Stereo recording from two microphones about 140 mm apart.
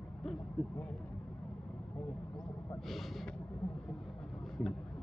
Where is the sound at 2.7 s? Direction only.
Centre (ahead or behind).